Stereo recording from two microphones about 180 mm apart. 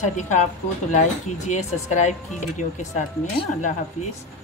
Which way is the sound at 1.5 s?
40° left (ahead or behind).